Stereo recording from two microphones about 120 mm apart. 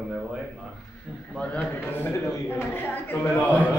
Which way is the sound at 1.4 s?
10° left (ahead or behind).